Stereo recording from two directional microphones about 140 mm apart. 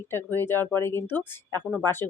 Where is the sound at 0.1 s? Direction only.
15° left (ahead or behind).